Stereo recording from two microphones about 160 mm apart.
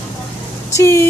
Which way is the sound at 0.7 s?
15° left (ahead or behind).